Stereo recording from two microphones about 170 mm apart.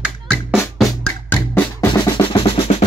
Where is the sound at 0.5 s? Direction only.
Centre (ahead or behind).